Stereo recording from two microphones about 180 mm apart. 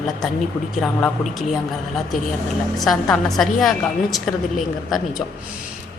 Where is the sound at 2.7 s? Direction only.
Centre (ahead or behind).